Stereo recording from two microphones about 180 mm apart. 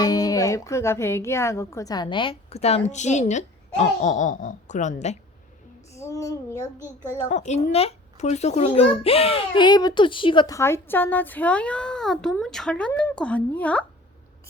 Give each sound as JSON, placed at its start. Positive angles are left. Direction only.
{"t": 0.0, "sound": "a woman's voice", "side_deg": 20}
{"t": 5.9, "sound": "a child's voice", "side_deg": 15}
{"t": 7.3, "sound": "a child's voice", "side_deg": 40}